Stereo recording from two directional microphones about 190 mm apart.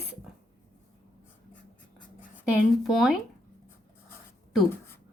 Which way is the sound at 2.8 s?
Centre (ahead or behind).